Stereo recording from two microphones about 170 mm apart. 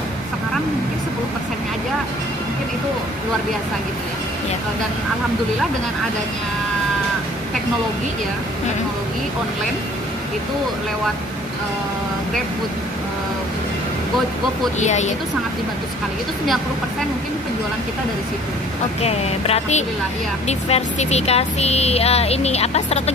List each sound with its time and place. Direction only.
14.8 s a woman's voice: 45° left (ahead or behind)
18.9 s speech: 35° left (ahead or behind)